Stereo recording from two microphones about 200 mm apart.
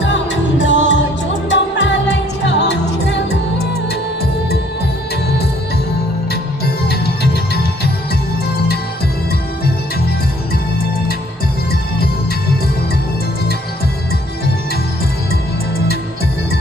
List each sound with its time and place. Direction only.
0.0 s music: 60° left (ahead or behind)
6.8 s music: 50° left (ahead or behind)